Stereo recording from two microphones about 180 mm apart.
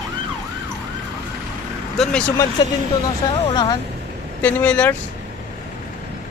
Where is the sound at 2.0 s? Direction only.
5° left (ahead or behind).